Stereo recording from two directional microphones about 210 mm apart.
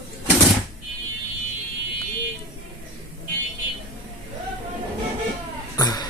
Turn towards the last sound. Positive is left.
turn(degrees=20)  # may be behind; listen again after turning